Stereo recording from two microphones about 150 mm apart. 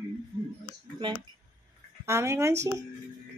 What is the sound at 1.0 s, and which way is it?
Speech, 35° right (ahead or behind).